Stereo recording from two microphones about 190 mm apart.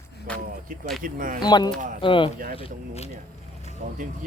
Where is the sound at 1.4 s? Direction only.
20° left (ahead or behind).